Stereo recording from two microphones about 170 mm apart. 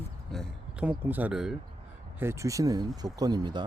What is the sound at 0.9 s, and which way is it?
Speech, 10° right (ahead or behind).